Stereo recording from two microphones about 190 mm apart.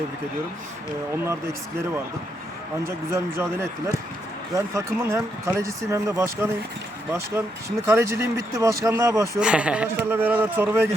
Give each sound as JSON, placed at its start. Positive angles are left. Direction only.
{"t": 2.8, "sound": "speech", "side_deg": -15}